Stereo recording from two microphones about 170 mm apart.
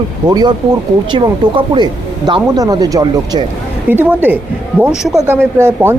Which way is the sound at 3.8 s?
10° right (ahead or behind).